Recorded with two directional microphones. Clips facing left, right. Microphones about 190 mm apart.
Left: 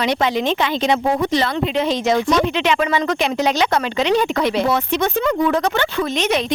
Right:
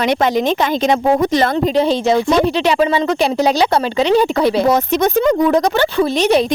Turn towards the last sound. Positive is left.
turn(degrees=-35)  # may be behind; listen again after turning